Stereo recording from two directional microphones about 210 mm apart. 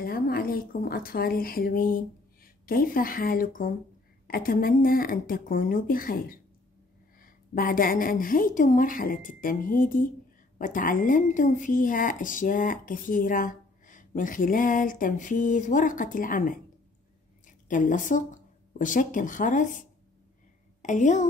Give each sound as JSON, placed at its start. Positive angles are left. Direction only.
{"t": 0.0, "sound": "speech", "side_deg": 45}
{"t": 20.8, "sound": "speech", "side_deg": 35}